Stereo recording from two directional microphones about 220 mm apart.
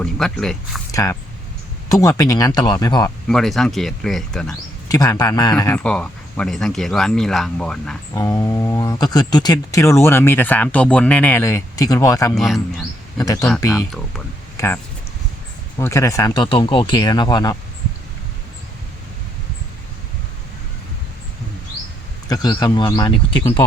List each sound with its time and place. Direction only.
0.0 s speech: 5° left (ahead or behind)
0.9 s a sound: 15° left (ahead or behind)
1.9 s speech: 15° left (ahead or behind)
3.2 s speech: centre (ahead or behind)
4.9 s speech: 15° left (ahead or behind)
8.1 s speech: 15° left (ahead or behind)
14.5 s a sound: 10° left (ahead or behind)
15.8 s speech: 15° left (ahead or behind)
22.3 s speech: 20° left (ahead or behind)